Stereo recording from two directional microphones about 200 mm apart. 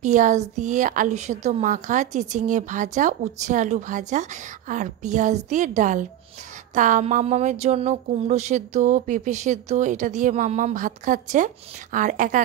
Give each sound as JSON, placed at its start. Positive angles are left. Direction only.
{"t": 0.0, "sound": "speech", "side_deg": -40}